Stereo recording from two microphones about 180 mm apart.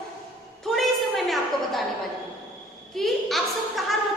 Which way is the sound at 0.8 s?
Centre (ahead or behind).